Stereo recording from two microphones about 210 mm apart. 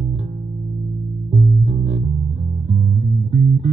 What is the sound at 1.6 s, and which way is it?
Music, 30° right (ahead or behind).